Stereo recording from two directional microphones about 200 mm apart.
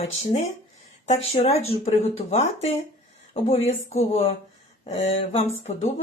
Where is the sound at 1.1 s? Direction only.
30° left (ahead or behind).